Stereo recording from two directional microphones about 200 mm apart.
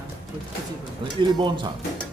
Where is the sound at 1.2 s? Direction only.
20° right (ahead or behind).